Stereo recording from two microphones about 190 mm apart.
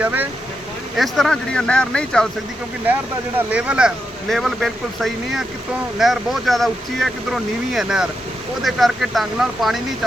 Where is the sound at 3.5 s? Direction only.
5° right (ahead or behind).